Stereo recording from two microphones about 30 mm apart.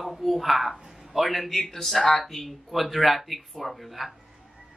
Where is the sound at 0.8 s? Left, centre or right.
Centre.